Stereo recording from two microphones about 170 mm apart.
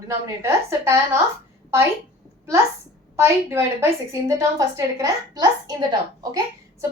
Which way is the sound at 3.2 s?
15° right (ahead or behind).